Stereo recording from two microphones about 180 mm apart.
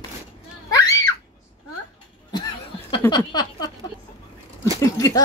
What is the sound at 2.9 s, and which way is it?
Speech, 25° left (ahead or behind).